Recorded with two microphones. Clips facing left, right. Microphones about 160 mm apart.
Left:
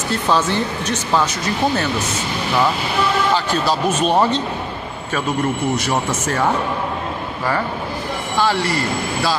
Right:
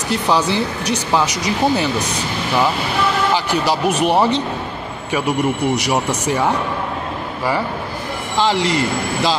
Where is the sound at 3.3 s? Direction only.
15° right (ahead or behind).